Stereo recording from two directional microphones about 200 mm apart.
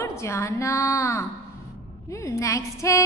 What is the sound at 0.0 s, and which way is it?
A woman's voice, 15° left (ahead or behind).